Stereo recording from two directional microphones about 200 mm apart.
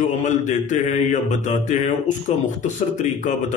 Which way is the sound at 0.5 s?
35° left (ahead or behind).